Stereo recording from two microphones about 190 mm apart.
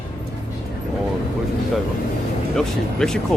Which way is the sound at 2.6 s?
5° left (ahead or behind).